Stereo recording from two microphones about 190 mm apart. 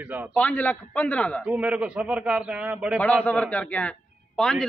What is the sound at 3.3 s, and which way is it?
A man's voice, 5° left (ahead or behind).